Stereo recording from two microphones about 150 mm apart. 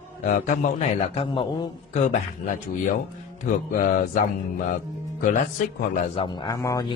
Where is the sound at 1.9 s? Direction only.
55° left (ahead or behind).